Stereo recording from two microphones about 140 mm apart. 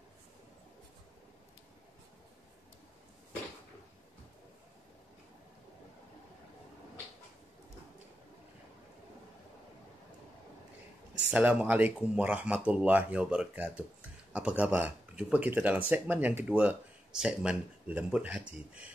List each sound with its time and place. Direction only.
11.2 s speech: 10° right (ahead or behind)